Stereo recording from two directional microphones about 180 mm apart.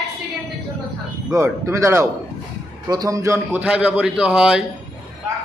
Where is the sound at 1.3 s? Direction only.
15° right (ahead or behind).